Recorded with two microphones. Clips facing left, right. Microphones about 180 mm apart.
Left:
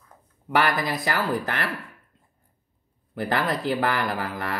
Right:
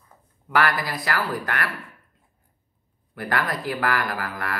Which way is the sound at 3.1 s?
25° left (ahead or behind).